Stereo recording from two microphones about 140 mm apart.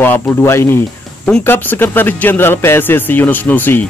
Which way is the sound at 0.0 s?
15° left (ahead or behind).